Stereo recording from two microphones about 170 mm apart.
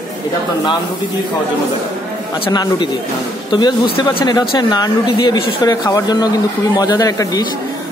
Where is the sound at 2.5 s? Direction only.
25° left (ahead or behind).